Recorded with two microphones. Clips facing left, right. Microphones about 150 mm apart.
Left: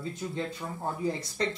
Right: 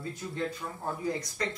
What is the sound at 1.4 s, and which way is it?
Speech, 30° left (ahead or behind).